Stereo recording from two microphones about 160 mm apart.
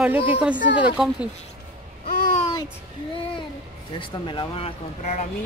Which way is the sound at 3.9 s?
30° left (ahead or behind).